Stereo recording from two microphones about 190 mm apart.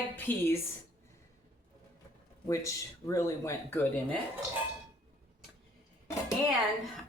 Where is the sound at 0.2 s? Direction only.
10° left (ahead or behind).